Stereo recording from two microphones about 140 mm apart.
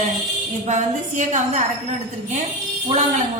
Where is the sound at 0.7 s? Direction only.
60° right (ahead or behind).